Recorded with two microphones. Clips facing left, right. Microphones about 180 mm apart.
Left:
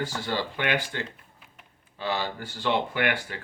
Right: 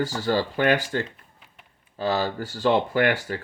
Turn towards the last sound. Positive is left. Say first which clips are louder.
# right 6 dB
turn(degrees=-40)  # may be behind; listen again after turning